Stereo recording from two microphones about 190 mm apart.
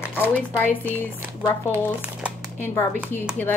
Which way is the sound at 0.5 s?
10° left (ahead or behind).